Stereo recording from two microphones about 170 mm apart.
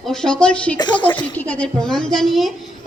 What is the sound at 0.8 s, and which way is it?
Speech, 25° left (ahead or behind).